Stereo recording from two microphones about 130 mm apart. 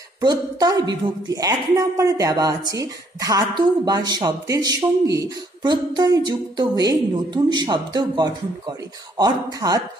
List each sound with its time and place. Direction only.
0.2 s a woman's voice: 30° right (ahead or behind)